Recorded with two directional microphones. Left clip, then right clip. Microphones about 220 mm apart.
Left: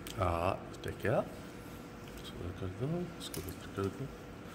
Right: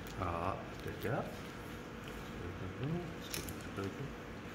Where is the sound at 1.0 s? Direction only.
60° left (ahead or behind).